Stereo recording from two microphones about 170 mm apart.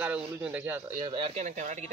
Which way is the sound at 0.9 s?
30° right (ahead or behind).